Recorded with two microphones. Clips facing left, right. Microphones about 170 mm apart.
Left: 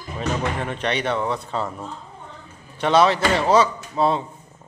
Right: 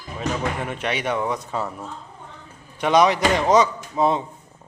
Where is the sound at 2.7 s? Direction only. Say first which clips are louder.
Even; 15° right (ahead or behind).